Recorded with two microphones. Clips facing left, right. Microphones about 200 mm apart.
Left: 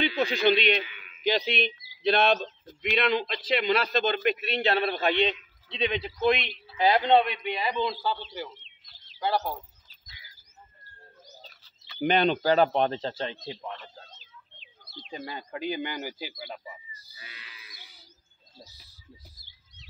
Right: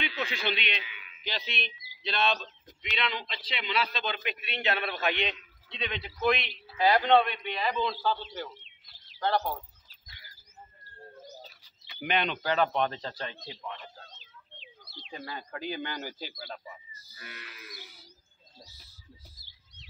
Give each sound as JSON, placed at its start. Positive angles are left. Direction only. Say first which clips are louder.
{"t": 0.2, "sound": "a man's voice", "louder": "left 11 dB", "side_deg": 40}
{"t": 9.2, "sound": "speech", "louder": "left 1 dB", "side_deg": 10}
{"t": 12.0, "sound": "speech", "louder": "left 7 dB", "side_deg": 35}
{"t": 14.9, "sound": "bird", "louder": "left 4 dB", "side_deg": 50}
{"t": 15.1, "sound": "speech", "louder": "left 3 dB", "side_deg": 20}
{"t": 17.2, "sound": "livestock", "louder": "right 6 dB", "side_deg": -55}